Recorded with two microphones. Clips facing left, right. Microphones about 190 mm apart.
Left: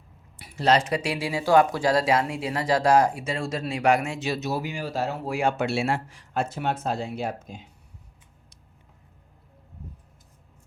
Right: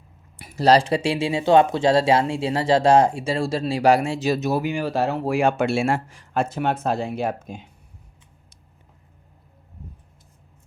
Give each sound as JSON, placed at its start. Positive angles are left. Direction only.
{"t": 0.3, "sound": "speech", "side_deg": -45}